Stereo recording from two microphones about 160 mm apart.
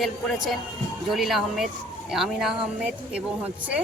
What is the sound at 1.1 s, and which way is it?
A woman's voice, centre (ahead or behind).